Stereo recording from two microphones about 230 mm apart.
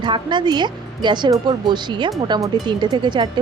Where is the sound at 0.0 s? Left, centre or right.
Centre.